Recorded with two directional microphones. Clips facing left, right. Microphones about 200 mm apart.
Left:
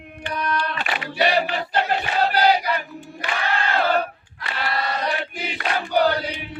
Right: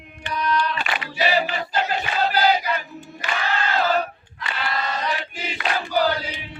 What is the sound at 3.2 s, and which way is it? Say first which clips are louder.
Crowd: even; 55° left (ahead or behind).